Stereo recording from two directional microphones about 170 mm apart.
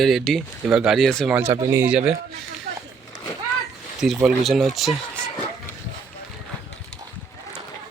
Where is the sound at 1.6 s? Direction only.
10° right (ahead or behind).